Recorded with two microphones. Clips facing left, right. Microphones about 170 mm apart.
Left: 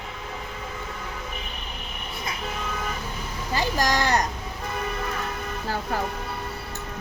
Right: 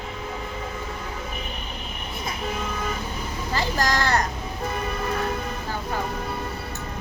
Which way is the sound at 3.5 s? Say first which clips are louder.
Left 1 dB; 15° left (ahead or behind).